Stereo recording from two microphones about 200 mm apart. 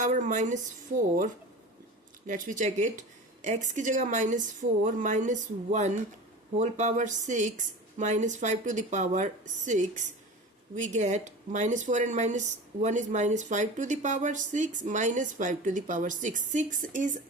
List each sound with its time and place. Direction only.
0.0 s speech: 40° right (ahead or behind)